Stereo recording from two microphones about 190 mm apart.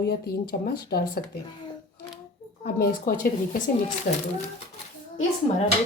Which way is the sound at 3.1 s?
45° left (ahead or behind).